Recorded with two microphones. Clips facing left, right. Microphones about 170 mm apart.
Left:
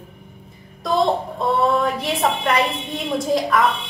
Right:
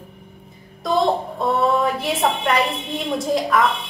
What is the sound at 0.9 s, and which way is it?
A woman's voice, centre (ahead or behind).